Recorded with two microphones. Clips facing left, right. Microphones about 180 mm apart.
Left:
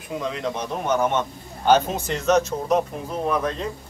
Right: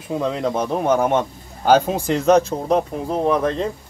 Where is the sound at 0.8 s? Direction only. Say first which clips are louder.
Right 3 dB; 30° right (ahead or behind).